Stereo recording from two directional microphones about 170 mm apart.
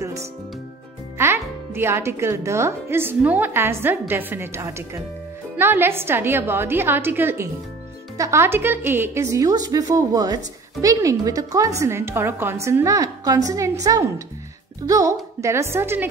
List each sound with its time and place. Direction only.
0.0 s music: 20° right (ahead or behind)
1.1 s a woman's voice: 15° right (ahead or behind)